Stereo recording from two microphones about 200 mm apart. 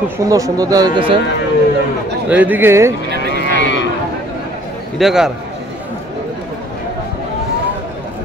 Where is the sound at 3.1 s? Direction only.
50° right (ahead or behind).